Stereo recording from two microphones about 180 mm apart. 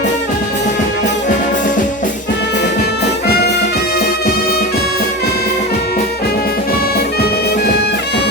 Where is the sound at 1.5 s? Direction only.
45° left (ahead or behind).